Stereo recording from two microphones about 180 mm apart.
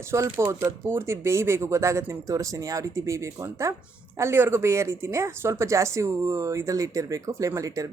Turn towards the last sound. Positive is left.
turn(degrees=-20)  # may be behind; listen again after turning